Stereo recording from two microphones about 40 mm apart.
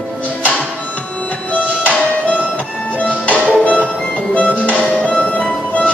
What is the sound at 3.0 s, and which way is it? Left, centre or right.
Music, left.